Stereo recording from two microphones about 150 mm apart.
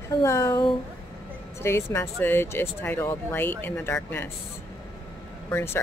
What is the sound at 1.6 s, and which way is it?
Speech, 15° left (ahead or behind).